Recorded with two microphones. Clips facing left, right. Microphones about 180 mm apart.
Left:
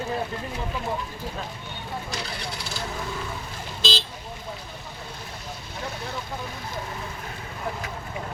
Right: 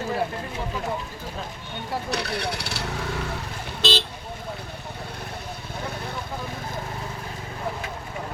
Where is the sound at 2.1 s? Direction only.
65° right (ahead or behind).